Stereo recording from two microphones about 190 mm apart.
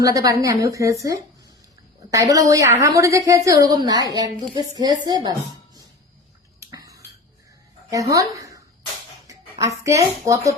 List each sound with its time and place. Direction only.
0.0 s a woman's voice: 20° right (ahead or behind)
2.0 s a woman's voice: 20° right (ahead or behind)
6.6 s a sound: 20° right (ahead or behind)
7.9 s speech: 15° right (ahead or behind)